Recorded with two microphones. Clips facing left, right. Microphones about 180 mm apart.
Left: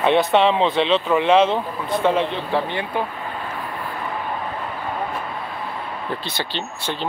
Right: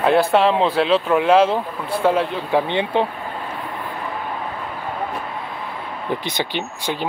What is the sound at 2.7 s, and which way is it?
Speech, 25° right (ahead or behind).